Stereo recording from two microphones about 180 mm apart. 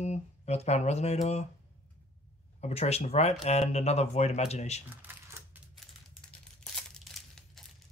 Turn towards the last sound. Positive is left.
turn(degrees=0)  # may be behind; listen again after turning